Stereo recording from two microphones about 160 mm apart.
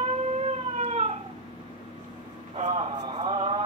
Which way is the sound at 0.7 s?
45° right (ahead or behind).